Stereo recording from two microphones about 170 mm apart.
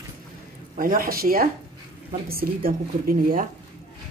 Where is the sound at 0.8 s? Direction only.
55° right (ahead or behind).